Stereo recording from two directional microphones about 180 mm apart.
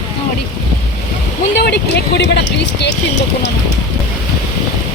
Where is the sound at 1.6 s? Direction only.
70° left (ahead or behind).